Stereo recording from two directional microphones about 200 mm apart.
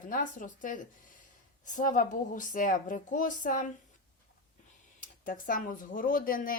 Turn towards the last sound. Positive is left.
turn(degrees=45)  # may be behind; listen again after turning